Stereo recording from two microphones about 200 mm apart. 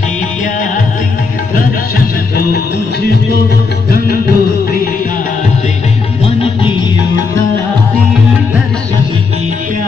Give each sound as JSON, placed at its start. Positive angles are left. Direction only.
{"t": 3.9, "sound": "music", "side_deg": 50}